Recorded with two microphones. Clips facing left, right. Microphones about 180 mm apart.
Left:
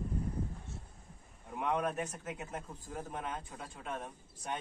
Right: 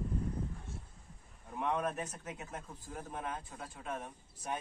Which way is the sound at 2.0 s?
15° left (ahead or behind).